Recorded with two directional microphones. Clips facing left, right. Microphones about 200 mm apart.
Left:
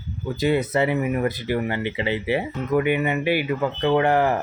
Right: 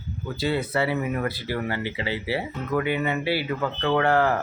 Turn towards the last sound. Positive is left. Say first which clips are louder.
# left 2 dB
turn(degrees=20)  # may be behind; listen again after turning